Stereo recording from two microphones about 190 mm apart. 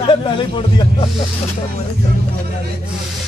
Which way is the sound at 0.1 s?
25° left (ahead or behind).